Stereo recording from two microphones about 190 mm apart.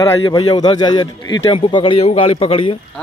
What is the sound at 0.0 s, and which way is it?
A man's voice, 20° left (ahead or behind).